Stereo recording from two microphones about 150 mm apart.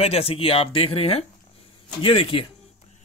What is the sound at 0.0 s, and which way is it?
Speech, 40° left (ahead or behind).